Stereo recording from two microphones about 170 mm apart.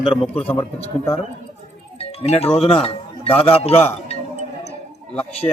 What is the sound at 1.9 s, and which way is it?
Speech, 35° left (ahead or behind).